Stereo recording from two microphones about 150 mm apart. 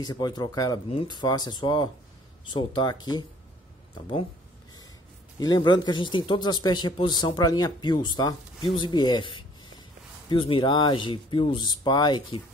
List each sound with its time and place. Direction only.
0.0 s a man's voice: 25° left (ahead or behind)
5.4 s a man's voice: 30° left (ahead or behind)